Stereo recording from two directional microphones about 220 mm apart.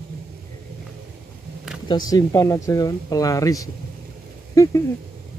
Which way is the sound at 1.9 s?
15° left (ahead or behind).